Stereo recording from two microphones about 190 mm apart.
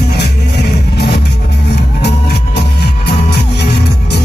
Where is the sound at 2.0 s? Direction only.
60° left (ahead or behind).